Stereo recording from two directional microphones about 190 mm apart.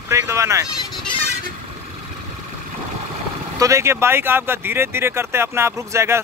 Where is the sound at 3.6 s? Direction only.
15° right (ahead or behind).